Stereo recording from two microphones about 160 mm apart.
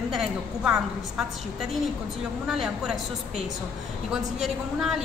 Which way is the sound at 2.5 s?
5° right (ahead or behind).